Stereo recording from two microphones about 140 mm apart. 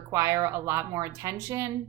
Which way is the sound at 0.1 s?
20° right (ahead or behind).